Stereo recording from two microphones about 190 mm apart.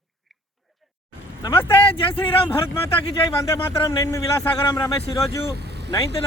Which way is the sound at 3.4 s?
20° left (ahead or behind).